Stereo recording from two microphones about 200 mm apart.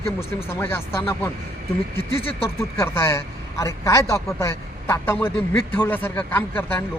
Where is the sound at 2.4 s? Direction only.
15° left (ahead or behind).